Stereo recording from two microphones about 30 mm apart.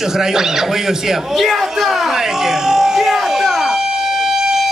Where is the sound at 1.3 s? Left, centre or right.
Centre.